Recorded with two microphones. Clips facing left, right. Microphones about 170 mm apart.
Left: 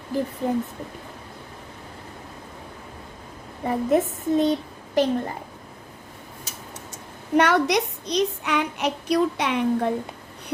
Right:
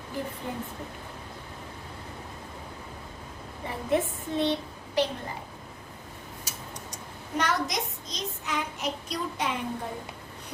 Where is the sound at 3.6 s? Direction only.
40° left (ahead or behind).